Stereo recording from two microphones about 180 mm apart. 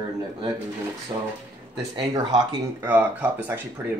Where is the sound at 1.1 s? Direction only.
25° right (ahead or behind).